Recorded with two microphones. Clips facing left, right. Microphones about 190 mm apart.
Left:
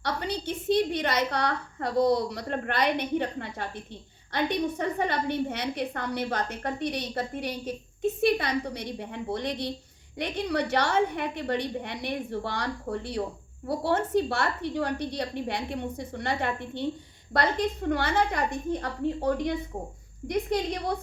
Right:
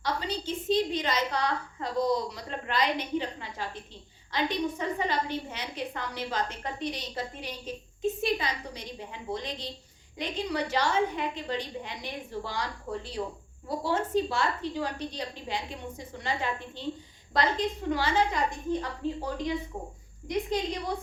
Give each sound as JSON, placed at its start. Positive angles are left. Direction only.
{"t": 0.0, "sound": "a woman's voice", "side_deg": 65}